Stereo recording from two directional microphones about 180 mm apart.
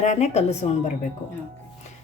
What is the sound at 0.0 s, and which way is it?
Speech, 40° left (ahead or behind).